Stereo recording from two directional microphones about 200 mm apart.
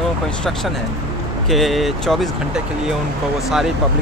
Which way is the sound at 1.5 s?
Centre (ahead or behind).